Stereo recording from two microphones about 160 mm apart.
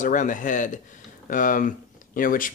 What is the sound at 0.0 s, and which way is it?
Speech, 55° left (ahead or behind).